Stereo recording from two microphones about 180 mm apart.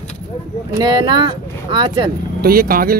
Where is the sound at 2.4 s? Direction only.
55° right (ahead or behind).